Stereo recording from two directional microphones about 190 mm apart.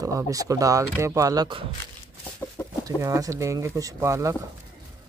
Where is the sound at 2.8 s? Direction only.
20° right (ahead or behind).